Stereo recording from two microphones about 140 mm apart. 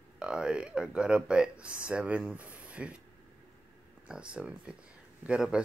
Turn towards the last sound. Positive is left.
turn(degrees=-5)  # may be behind; listen again after turning